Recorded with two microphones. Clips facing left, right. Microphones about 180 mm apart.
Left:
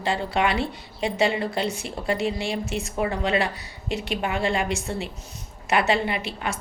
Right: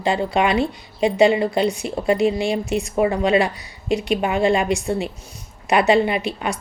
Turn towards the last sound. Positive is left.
turn(degrees=-15)  # may be behind; listen again after turning